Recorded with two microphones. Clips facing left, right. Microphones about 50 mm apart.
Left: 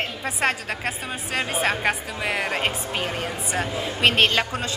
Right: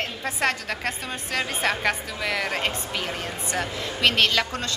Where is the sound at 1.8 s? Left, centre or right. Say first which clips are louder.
Left 1 dB; left.